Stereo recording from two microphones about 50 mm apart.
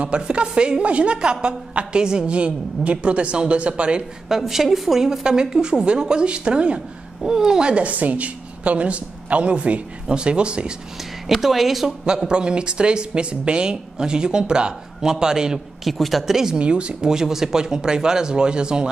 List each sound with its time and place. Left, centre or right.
0.0 s a woman's voice: right
4.3 s a woman's voice: centre
11.2 s speech: centre
12.3 s speech: centre
15.9 s speech: centre
16.5 s speech: right